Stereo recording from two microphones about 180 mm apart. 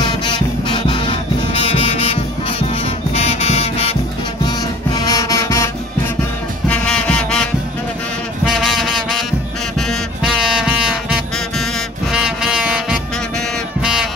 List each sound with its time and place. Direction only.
0.0 s music: 25° left (ahead or behind)
3.2 s music: 35° left (ahead or behind)
4.5 s music: 20° left (ahead or behind)
6.7 s music: 5° left (ahead or behind)
8.5 s brass instrument: centre (ahead or behind)
9.8 s music: centre (ahead or behind)